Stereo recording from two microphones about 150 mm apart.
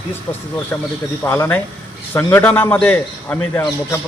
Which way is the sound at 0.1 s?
15° left (ahead or behind).